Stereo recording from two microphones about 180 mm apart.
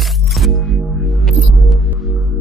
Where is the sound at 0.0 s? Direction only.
Centre (ahead or behind).